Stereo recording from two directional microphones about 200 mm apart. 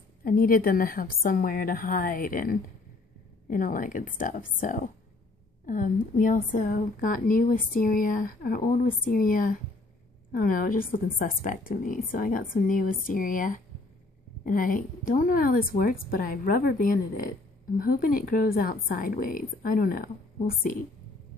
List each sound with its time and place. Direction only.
0.2 s a woman's voice: 45° left (ahead or behind)